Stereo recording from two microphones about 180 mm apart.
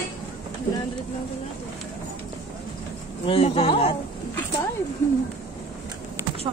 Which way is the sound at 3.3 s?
30° left (ahead or behind).